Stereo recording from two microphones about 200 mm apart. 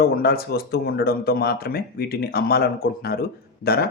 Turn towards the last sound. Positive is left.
turn(degrees=50)  # may be behind; listen again after turning